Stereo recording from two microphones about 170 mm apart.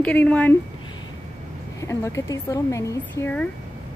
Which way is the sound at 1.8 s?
15° left (ahead or behind).